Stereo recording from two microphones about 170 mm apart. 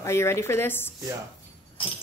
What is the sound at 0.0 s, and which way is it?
Speech, 15° left (ahead or behind).